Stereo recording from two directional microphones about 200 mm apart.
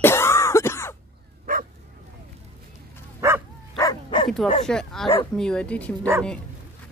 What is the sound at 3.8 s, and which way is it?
Dog, 20° left (ahead or behind).